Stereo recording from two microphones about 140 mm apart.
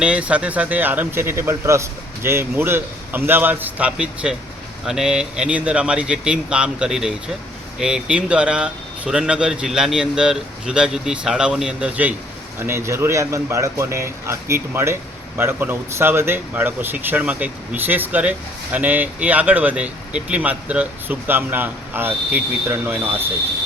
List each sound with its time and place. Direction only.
0.0 s speech: 10° right (ahead or behind)